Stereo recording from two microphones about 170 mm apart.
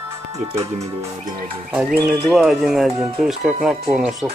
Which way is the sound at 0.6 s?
15° right (ahead or behind).